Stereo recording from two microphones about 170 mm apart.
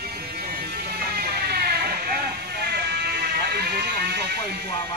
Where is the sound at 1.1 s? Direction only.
65° right (ahead or behind).